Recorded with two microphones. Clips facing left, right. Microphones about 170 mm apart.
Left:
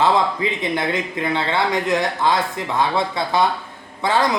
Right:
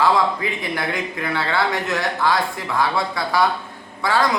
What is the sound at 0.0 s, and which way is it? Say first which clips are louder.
Speech: left 1 dB; 20° left (ahead or behind).